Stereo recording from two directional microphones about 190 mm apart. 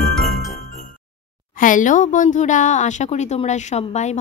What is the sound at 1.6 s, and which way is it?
Speech, 45° left (ahead or behind).